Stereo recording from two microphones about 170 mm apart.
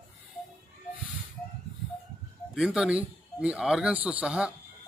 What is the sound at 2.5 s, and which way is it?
Speech, centre (ahead or behind).